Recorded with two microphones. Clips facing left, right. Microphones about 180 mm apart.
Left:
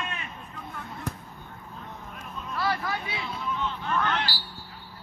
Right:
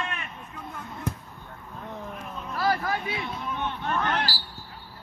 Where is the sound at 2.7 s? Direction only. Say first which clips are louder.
Right 4 dB; 45° right (ahead or behind).